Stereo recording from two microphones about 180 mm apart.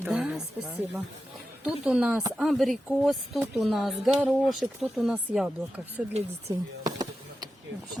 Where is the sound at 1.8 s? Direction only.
5° right (ahead or behind).